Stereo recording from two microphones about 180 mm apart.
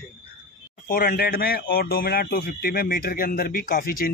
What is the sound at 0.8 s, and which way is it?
Speech, 55° left (ahead or behind).